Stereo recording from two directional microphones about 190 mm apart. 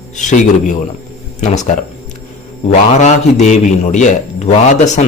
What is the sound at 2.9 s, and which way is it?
Speech, 35° left (ahead or behind).